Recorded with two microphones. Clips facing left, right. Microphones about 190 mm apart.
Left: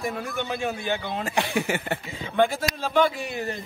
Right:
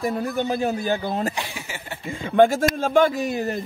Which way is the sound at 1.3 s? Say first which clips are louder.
Left 7 dB; 60° left (ahead or behind).